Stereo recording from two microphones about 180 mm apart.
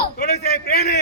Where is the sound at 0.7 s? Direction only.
60° left (ahead or behind).